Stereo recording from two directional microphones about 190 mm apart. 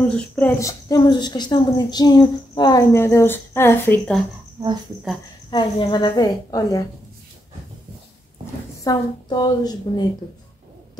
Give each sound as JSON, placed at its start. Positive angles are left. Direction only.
{"t": 0.1, "sound": "a woman's voice", "side_deg": 10}
{"t": 5.5, "sound": "a woman's voice", "side_deg": 25}
{"t": 8.8, "sound": "a woman's voice", "side_deg": 20}